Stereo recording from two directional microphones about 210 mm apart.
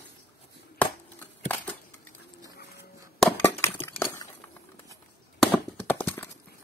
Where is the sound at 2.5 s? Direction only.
50° left (ahead or behind).